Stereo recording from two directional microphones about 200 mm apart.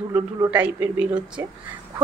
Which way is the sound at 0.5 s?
10° right (ahead or behind).